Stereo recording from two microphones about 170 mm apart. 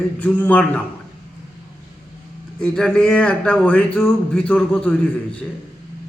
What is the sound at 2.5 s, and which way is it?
A man's voice, 5° left (ahead or behind).